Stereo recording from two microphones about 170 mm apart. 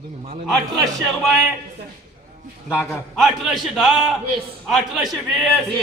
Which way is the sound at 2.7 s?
10° left (ahead or behind).